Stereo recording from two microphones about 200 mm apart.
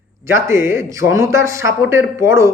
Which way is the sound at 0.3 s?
15° right (ahead or behind).